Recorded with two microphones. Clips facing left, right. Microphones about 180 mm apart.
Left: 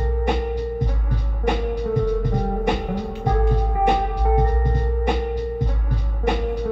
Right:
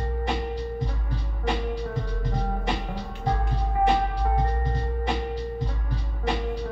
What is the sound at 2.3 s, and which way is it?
Music, 55° left (ahead or behind).